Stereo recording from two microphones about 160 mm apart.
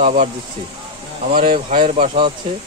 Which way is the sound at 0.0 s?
50° right (ahead or behind).